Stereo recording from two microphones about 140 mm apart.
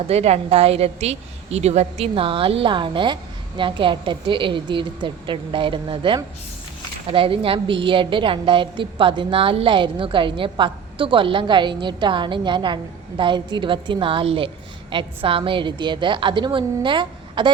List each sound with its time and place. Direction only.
0.1 s a woman's voice: 50° right (ahead or behind)